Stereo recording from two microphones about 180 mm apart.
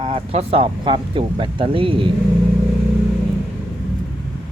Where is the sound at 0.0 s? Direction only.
30° right (ahead or behind).